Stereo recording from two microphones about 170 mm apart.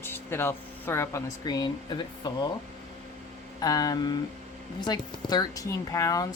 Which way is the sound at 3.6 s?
20° left (ahead or behind).